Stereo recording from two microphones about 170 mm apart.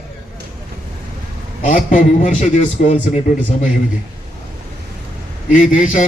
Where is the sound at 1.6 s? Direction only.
50° left (ahead or behind).